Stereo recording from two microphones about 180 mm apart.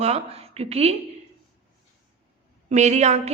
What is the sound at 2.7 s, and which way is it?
Speech, 40° right (ahead or behind).